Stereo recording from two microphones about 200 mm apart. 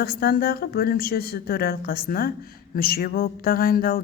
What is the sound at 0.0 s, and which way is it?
A woman's voice, 50° left (ahead or behind).